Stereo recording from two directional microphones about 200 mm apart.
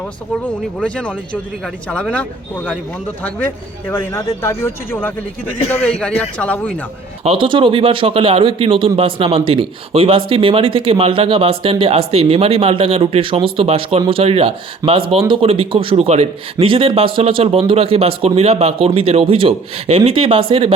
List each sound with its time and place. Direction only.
0.8 s a man's voice: 5° left (ahead or behind)
5.5 s a man's voice: 35° left (ahead or behind)
5.8 s a man's voice: 5° left (ahead or behind)
7.3 s a man's voice: 25° right (ahead or behind)
14.8 s speech: 15° right (ahead or behind)
15.3 s a man's voice: 30° right (ahead or behind)